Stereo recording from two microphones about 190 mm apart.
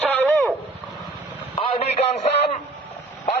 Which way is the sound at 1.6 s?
30° left (ahead or behind).